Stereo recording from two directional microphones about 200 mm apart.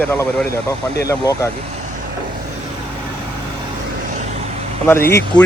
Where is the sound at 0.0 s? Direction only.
10° left (ahead or behind).